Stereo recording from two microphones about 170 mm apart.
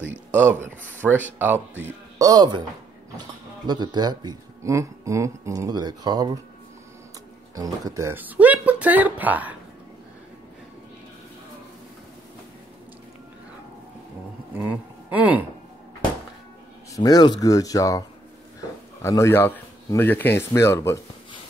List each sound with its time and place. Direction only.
0.3 s speech: 10° right (ahead or behind)
7.5 s speech: 20° right (ahead or behind)
14.6 s speech: 10° right (ahead or behind)
16.9 s speech: 20° left (ahead or behind)
19.0 s speech: 15° left (ahead or behind)